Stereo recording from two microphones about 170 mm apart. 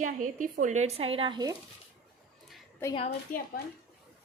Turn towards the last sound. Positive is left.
turn(degrees=55)  # may be behind; listen again after turning